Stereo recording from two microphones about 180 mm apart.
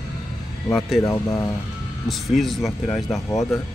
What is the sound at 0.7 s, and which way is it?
Speech, centre (ahead or behind).